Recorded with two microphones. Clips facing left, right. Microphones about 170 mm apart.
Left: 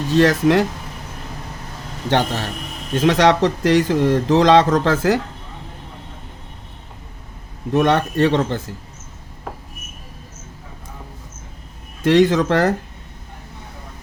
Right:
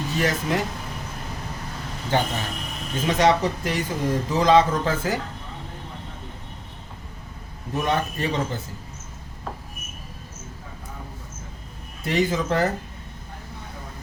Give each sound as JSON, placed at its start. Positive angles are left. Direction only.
{"t": 0.2, "sound": "speech", "side_deg": 80}
{"t": 2.0, "sound": "speech", "side_deg": 75}
{"t": 7.7, "sound": "speech", "side_deg": 75}
{"t": 12.0, "sound": "speech", "side_deg": 85}